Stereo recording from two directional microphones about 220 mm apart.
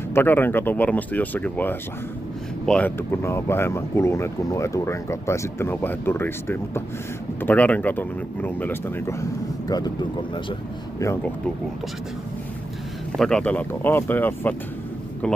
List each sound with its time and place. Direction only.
0.1 s speech: 10° left (ahead or behind)
13.2 s speech: 5° left (ahead or behind)